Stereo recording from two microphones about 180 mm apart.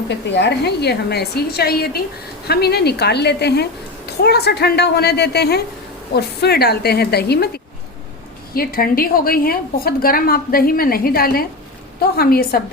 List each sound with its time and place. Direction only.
0.3 s a child's voice: 70° left (ahead or behind)